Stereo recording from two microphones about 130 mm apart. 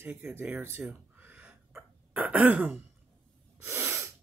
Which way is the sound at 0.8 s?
15° right (ahead or behind).